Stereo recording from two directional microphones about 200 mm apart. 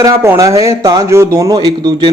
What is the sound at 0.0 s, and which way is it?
Speech, 15° right (ahead or behind).